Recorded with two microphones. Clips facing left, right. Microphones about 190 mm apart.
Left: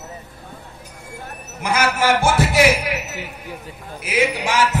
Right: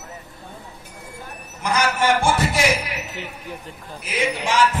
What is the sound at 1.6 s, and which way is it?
Music, 5° left (ahead or behind).